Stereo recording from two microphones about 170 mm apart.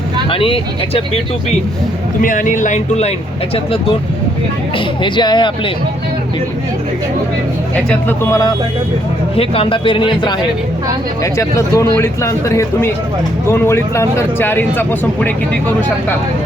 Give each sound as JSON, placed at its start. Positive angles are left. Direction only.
{"t": 0.3, "sound": "speech", "side_deg": 30}
{"t": 2.2, "sound": "speech", "side_deg": 50}
{"t": 5.0, "sound": "speech", "side_deg": 25}
{"t": 7.9, "sound": "speech", "side_deg": 10}
{"t": 9.3, "sound": "speech", "side_deg": 35}
{"t": 11.2, "sound": "speech", "side_deg": 20}